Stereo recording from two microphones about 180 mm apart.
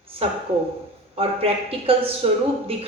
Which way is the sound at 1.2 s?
30° right (ahead or behind).